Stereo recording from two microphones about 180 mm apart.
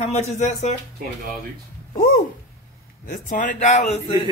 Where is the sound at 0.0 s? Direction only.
40° left (ahead or behind).